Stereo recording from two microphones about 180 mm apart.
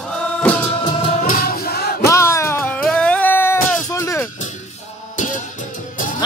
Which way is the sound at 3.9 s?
15° left (ahead or behind).